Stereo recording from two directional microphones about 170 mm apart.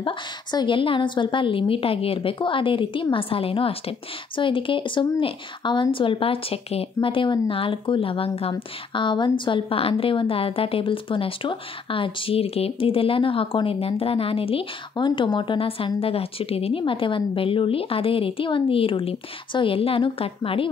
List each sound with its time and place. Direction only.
0.0 s a woman's voice: 25° left (ahead or behind)